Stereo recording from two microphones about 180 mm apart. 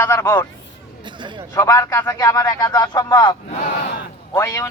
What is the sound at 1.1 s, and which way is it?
Speech, 25° right (ahead or behind).